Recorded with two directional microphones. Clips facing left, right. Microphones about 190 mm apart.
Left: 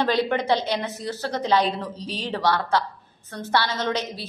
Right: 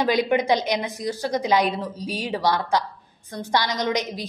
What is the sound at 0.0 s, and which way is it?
A woman's voice, 15° right (ahead or behind).